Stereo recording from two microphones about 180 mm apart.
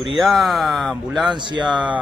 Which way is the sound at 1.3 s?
25° right (ahead or behind).